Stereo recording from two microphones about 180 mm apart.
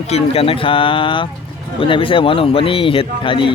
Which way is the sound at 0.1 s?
30° left (ahead or behind).